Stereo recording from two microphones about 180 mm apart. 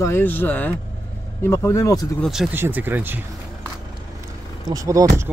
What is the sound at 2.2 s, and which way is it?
Speech, 5° right (ahead or behind).